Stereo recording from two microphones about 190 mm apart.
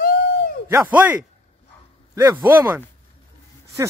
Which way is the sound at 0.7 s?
10° right (ahead or behind).